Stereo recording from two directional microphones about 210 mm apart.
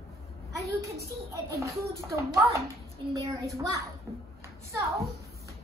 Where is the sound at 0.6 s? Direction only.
15° right (ahead or behind).